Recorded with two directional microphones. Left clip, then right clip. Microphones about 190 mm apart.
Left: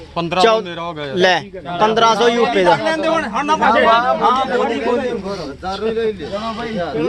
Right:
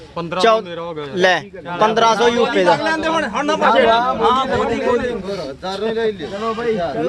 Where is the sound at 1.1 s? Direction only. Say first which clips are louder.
Left 1 dB; centre (ahead or behind).